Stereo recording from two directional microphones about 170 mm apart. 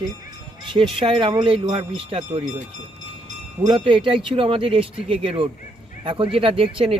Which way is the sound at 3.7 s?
30° right (ahead or behind).